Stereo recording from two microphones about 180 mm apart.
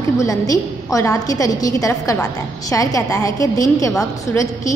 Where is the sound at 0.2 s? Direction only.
20° left (ahead or behind).